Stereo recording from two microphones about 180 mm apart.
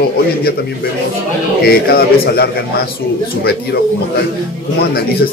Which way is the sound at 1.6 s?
60° left (ahead or behind).